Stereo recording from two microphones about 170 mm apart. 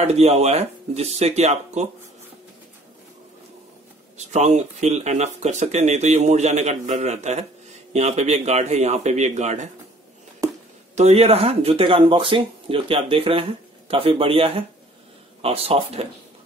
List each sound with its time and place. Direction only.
0.0 s speech: 40° right (ahead or behind)
4.2 s speech: 45° right (ahead or behind)
10.4 s a sound: 20° right (ahead or behind)
11.0 s speech: 40° right (ahead or behind)